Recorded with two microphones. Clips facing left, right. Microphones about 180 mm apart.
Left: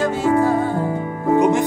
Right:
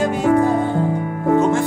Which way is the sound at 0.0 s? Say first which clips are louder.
Right 1 dB; 15° right (ahead or behind).